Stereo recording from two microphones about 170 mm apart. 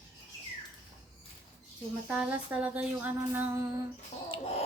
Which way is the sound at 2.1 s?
5° right (ahead or behind).